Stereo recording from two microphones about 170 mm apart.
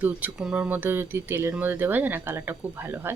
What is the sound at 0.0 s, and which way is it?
Speech, 10° right (ahead or behind).